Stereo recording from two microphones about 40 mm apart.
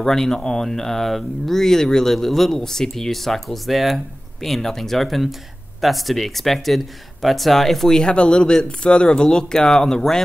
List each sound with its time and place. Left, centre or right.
0.0 s speech: centre
8.0 s speech: left